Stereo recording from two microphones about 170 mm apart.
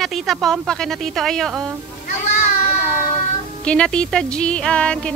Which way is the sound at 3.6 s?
5° left (ahead or behind).